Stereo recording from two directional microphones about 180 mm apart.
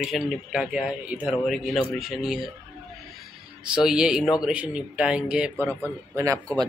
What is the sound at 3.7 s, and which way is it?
Speech, 5° right (ahead or behind).